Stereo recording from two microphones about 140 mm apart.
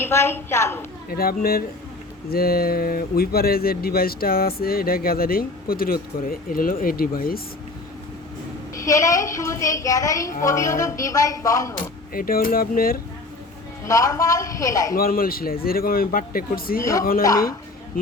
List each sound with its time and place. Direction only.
0.0 s a woman's voice: 15° left (ahead or behind)
1.1 s speech: 90° left
8.7 s a woman's voice: 20° left (ahead or behind)
12.1 s speech: 90° left
13.8 s a woman's voice: 25° left (ahead or behind)
14.9 s speech: 90° left
17.2 s a woman's voice: 25° left (ahead or behind)